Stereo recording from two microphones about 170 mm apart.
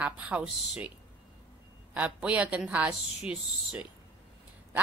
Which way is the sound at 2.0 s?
5° right (ahead or behind).